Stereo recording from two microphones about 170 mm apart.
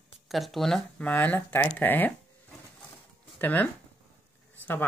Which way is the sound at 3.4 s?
10° left (ahead or behind).